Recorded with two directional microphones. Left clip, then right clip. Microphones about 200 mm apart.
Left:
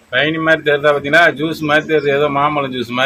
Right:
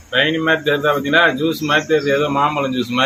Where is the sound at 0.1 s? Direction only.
30° left (ahead or behind).